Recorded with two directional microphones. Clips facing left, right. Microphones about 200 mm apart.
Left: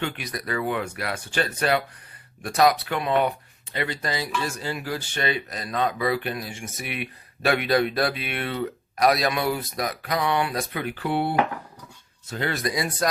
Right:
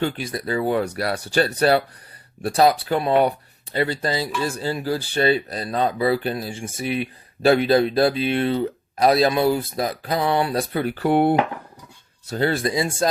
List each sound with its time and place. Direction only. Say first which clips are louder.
0.0 s speech: right 6 dB; 30° right (ahead or behind); by 11.3 s 50° right (ahead or behind)
12.3 s speech: right 6 dB; 35° right (ahead or behind)